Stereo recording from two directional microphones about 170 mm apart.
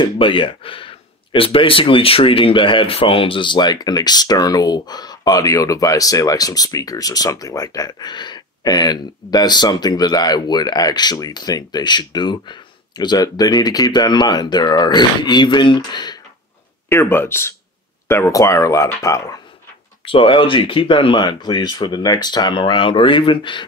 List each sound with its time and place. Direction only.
0.0 s speech: 30° left (ahead or behind)
16.9 s speech: 15° left (ahead or behind)
20.1 s speech: 30° left (ahead or behind)